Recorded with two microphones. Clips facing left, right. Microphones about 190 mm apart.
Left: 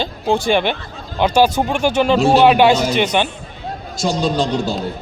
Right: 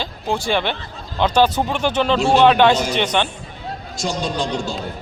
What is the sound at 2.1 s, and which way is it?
Speech, 40° left (ahead or behind).